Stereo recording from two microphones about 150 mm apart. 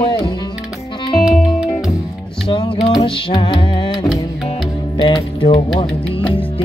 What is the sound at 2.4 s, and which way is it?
Music, 35° left (ahead or behind).